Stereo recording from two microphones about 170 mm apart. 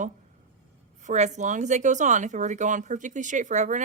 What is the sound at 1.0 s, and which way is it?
Speech, 45° right (ahead or behind).